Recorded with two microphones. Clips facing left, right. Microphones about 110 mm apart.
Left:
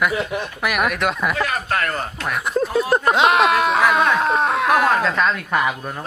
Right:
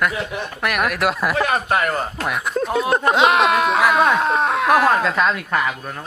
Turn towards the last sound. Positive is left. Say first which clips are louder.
# even
turn(degrees=0)  # may be behind; listen again after turning